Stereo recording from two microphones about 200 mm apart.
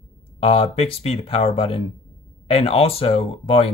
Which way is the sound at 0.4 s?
30° left (ahead or behind).